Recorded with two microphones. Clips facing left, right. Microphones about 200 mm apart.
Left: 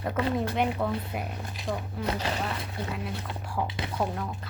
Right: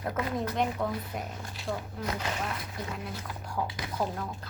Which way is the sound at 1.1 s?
15° left (ahead or behind).